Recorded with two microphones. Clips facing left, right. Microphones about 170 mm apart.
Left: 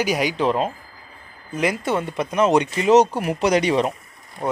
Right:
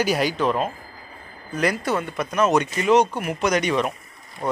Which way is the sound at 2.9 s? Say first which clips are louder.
Left 3 dB; 40° left (ahead or behind).